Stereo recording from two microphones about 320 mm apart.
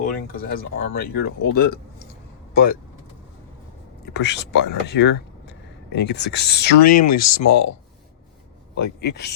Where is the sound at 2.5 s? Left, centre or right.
Left.